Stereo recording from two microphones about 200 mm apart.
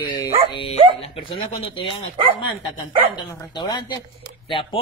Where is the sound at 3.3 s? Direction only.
20° left (ahead or behind).